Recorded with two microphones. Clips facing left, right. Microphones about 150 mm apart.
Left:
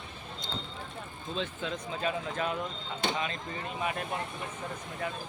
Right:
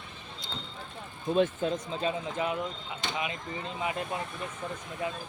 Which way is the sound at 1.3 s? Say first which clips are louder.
Right 9 dB; 50° right (ahead or behind).